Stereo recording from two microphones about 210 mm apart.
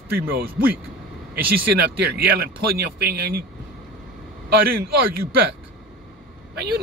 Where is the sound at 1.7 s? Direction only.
50° right (ahead or behind).